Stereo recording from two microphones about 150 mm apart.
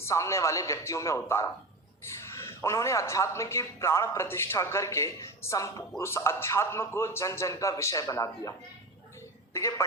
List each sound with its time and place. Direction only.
0.0 s a man's voice: 20° left (ahead or behind)